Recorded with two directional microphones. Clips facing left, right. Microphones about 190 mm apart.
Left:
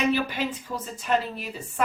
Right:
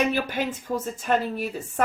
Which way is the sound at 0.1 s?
50° right (ahead or behind).